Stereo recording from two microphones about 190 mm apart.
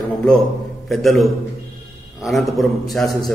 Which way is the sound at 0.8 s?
Centre (ahead or behind).